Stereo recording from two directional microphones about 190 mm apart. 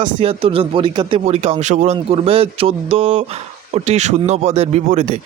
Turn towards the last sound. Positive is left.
turn(degrees=-35)  # may be behind; listen again after turning